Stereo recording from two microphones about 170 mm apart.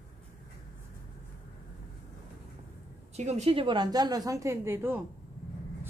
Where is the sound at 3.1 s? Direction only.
40° right (ahead or behind).